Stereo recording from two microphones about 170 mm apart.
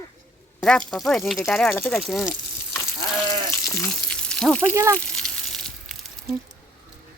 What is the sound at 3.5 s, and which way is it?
Frying, 15° left (ahead or behind).